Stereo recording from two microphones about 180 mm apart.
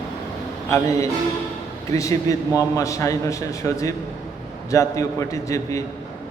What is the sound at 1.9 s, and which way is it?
A man's voice, 20° left (ahead or behind).